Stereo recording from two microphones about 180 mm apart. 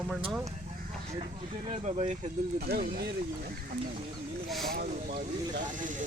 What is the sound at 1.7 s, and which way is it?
Speech, 35° right (ahead or behind).